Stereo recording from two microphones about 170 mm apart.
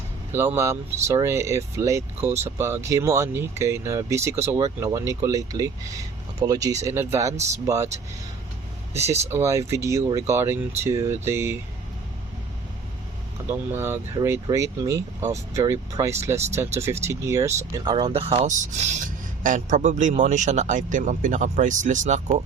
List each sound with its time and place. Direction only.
0.3 s speech: 15° right (ahead or behind)
9.3 s speech: 15° right (ahead or behind)
13.5 s speech: 15° right (ahead or behind)
17.9 s speech: 35° right (ahead or behind)
18.4 s speech: 45° right (ahead or behind)